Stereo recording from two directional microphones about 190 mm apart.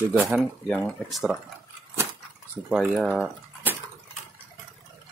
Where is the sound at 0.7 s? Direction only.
5° left (ahead or behind).